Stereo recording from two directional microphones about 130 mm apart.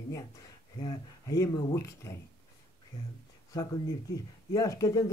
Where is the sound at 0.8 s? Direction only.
30° left (ahead or behind).